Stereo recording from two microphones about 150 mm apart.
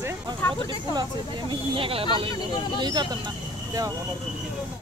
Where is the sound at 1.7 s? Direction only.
35° right (ahead or behind).